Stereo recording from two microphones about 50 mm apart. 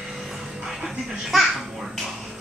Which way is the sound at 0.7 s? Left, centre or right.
Centre.